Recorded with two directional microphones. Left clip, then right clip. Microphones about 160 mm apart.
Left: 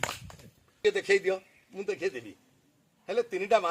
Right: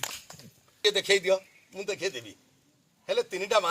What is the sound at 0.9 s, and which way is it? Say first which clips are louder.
A man's voice: right 2 dB; 25° left (ahead or behind).